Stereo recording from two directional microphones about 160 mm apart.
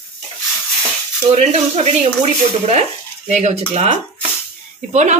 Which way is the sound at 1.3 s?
45° right (ahead or behind).